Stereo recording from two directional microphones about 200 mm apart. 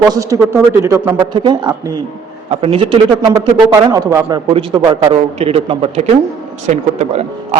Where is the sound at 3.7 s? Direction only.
15° right (ahead or behind).